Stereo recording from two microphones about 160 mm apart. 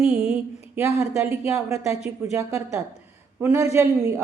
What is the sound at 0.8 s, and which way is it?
A woman's voice, 15° right (ahead or behind).